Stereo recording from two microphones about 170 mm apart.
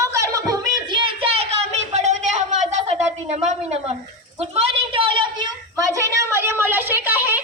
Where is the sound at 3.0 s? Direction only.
40° right (ahead or behind).